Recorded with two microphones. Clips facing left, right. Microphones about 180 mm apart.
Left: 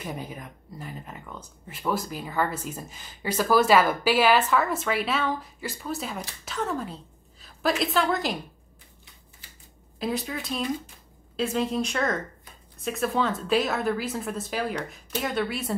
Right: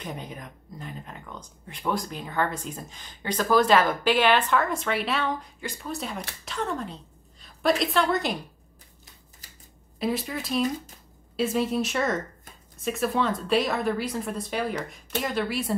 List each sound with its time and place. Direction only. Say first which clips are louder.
0.0 s speech: left 1 dB; 5° left (ahead or behind)
9.4 s a sound: even; 40° right (ahead or behind)
9.9 s speech: right 1 dB; centre (ahead or behind)